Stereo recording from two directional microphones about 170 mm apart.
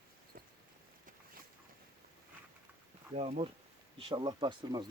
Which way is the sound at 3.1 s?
35° right (ahead or behind).